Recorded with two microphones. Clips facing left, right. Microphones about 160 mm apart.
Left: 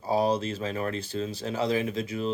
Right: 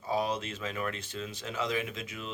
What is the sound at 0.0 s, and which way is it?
Speech, 35° left (ahead or behind).